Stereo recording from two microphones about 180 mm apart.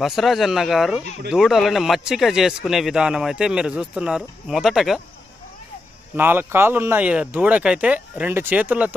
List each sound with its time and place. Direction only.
0.0 s speech: centre (ahead or behind)
6.1 s speech: 10° right (ahead or behind)